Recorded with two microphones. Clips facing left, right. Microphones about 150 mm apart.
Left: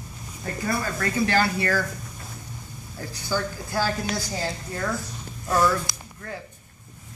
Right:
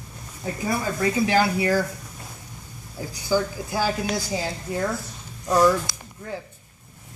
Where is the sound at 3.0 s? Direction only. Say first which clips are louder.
Right 5 dB; 10° right (ahead or behind).